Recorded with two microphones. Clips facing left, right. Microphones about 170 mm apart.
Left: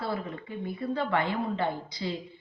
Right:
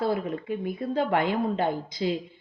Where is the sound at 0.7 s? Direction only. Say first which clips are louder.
Right 2 dB; 45° right (ahead or behind).